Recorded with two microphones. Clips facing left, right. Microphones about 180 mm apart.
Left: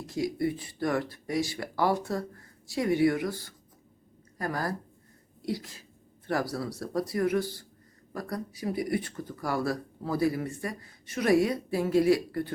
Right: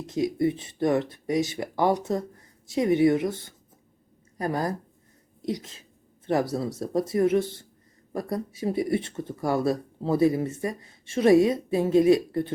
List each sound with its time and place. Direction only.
0.0 s a woman's voice: 20° right (ahead or behind)
5.4 s a sound: 20° right (ahead or behind)
6.2 s speech: 20° right (ahead or behind)